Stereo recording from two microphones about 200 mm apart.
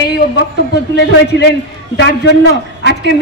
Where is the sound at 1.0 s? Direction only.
55° left (ahead or behind).